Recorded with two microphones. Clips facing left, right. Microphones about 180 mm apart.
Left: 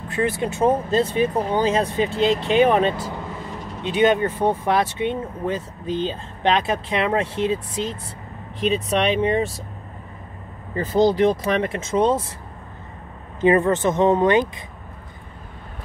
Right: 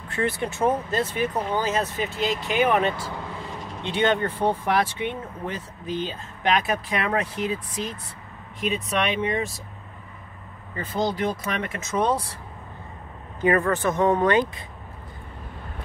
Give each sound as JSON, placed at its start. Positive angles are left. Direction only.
{"t": 0.4, "sound": "speech", "side_deg": 20}
{"t": 10.7, "sound": "speech", "side_deg": 35}
{"t": 13.4, "sound": "speech", "side_deg": 25}